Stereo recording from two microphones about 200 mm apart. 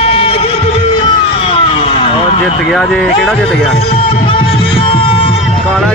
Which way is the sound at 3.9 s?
25° left (ahead or behind).